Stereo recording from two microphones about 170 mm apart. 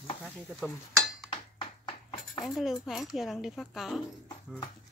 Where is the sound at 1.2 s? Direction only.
30° left (ahead or behind).